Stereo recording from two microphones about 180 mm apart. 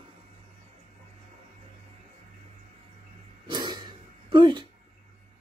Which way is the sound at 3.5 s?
25° right (ahead or behind).